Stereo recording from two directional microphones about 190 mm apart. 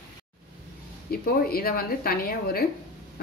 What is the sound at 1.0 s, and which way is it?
Speech, 55° left (ahead or behind).